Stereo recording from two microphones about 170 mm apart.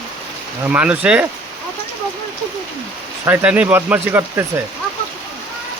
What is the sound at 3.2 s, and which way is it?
Speech, 10° right (ahead or behind).